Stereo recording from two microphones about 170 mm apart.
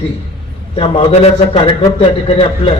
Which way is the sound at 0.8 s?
35° left (ahead or behind).